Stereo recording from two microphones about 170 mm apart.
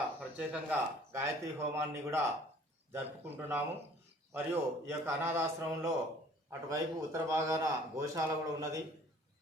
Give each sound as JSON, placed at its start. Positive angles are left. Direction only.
{"t": 0.2, "sound": "a man's voice", "side_deg": -10}